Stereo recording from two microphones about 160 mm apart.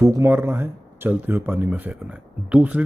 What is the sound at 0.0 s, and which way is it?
A man's voice, 15° right (ahead or behind).